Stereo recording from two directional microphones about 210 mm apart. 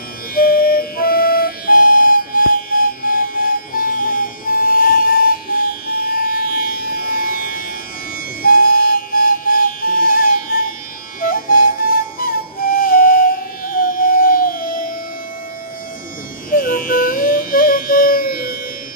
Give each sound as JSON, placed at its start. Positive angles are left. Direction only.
{"t": 0.3, "sound": "music", "side_deg": 45}
{"t": 11.1, "sound": "flute", "side_deg": 40}
{"t": 16.4, "sound": "music", "side_deg": 40}